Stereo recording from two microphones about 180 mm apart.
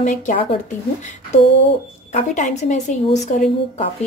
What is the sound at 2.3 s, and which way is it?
Speech, 40° left (ahead or behind).